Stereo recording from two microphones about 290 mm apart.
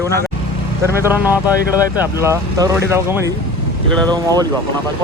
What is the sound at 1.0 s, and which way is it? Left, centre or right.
Speech, centre.